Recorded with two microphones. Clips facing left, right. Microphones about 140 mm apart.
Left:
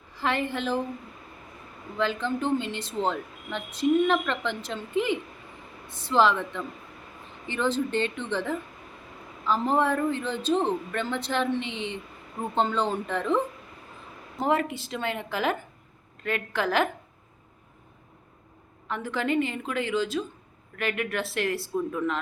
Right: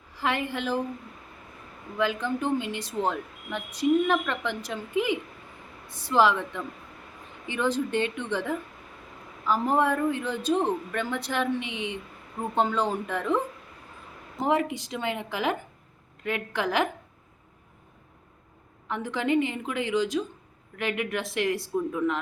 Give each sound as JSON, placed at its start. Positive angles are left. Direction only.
{"t": 0.2, "sound": "speech", "side_deg": -10}
{"t": 2.0, "sound": "speech", "side_deg": -10}
{"t": 14.4, "sound": "speech", "side_deg": -15}
{"t": 18.9, "sound": "speech", "side_deg": -15}